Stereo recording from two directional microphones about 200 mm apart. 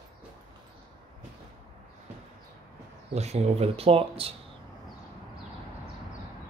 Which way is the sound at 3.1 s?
35° right (ahead or behind).